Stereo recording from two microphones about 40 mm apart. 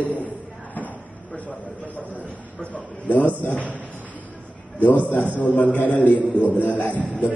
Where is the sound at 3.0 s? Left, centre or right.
Left.